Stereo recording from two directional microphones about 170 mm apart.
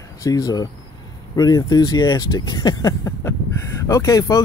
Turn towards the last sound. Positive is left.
turn(degrees=20)  # may be behind; listen again after turning